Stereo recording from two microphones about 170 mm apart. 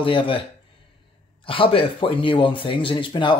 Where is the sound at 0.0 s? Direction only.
30° left (ahead or behind).